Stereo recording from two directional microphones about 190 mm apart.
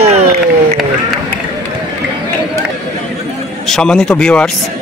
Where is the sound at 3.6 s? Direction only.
5° left (ahead or behind).